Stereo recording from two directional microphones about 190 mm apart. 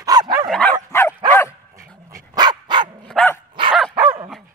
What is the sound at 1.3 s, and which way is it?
Dog, 10° left (ahead or behind).